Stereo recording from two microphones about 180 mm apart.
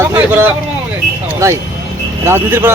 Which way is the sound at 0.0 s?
15° right (ahead or behind).